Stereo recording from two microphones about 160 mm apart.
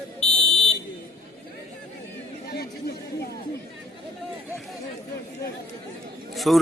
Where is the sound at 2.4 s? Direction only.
75° left (ahead or behind).